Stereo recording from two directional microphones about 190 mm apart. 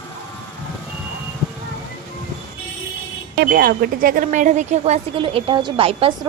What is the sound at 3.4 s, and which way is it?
Speech, 55° right (ahead or behind).